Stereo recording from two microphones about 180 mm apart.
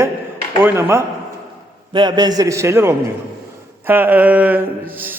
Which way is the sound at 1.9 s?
25° right (ahead or behind).